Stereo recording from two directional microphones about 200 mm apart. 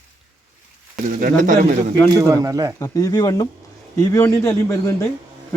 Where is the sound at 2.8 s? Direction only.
15° left (ahead or behind).